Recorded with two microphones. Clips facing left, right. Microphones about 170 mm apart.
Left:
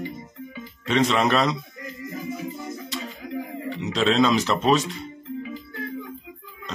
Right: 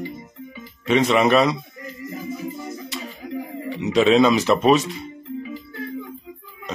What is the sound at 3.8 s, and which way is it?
Speech, 10° right (ahead or behind).